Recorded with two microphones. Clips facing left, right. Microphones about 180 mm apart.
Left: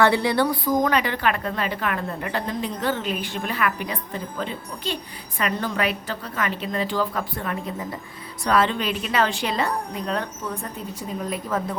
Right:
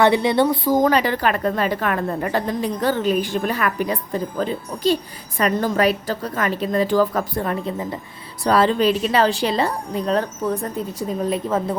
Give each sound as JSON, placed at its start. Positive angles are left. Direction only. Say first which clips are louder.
{"t": 0.0, "sound": "a woman's voice", "louder": "right 3 dB", "side_deg": -20}